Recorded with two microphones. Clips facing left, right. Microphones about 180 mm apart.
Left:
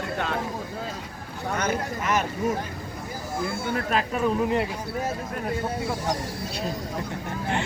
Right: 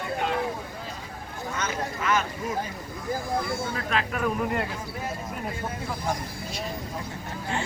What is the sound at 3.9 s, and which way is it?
Speech, 40° left (ahead or behind).